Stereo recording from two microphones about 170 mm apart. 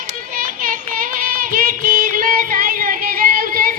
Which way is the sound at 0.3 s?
55° right (ahead or behind).